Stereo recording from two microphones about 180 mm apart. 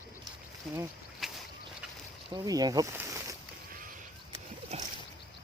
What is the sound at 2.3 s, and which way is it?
Speech, 20° right (ahead or behind).